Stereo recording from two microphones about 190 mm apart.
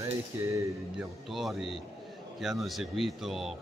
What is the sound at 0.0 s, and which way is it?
Music, 15° right (ahead or behind).